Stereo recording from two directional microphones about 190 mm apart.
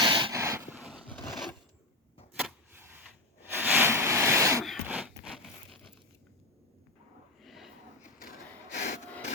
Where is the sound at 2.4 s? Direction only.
10° right (ahead or behind).